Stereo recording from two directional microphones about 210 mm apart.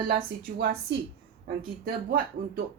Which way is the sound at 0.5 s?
50° right (ahead or behind).